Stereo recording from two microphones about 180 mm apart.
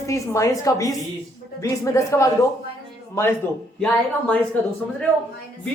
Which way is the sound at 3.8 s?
5° left (ahead or behind).